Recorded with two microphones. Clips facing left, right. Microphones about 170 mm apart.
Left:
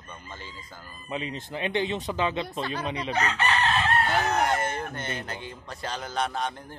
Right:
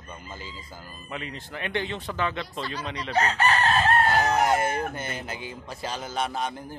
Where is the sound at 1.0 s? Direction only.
20° left (ahead or behind).